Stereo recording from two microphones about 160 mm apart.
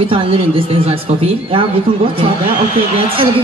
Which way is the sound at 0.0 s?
35° right (ahead or behind).